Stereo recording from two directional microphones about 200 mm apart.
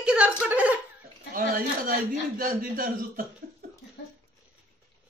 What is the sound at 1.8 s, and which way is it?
Speech, 45° right (ahead or behind).